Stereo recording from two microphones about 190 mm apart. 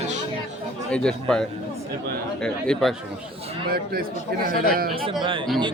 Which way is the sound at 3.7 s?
50° right (ahead or behind).